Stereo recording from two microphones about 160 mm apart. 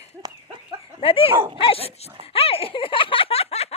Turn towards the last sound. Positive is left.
turn(degrees=40)  # may be behind; listen again after turning